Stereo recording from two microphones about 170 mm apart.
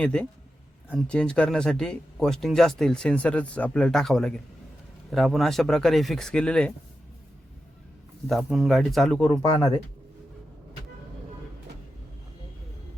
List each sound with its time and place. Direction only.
0.0 s speech: 5° left (ahead or behind)
8.3 s speech: centre (ahead or behind)
9.3 s speech: 20° left (ahead or behind)